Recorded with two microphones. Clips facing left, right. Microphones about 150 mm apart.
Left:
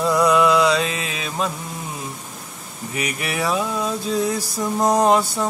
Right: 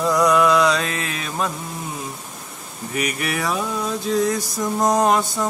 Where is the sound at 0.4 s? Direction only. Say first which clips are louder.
Even; 20° left (ahead or behind).